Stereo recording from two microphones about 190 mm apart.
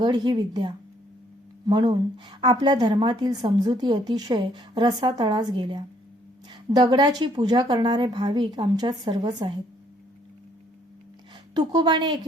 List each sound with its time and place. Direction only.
0.0 s a woman's voice: 25° right (ahead or behind)
11.5 s a woman's voice: 20° right (ahead or behind)